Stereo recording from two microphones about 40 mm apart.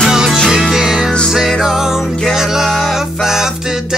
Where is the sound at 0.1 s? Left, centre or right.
Centre.